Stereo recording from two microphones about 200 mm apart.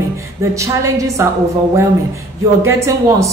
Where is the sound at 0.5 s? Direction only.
15° right (ahead or behind).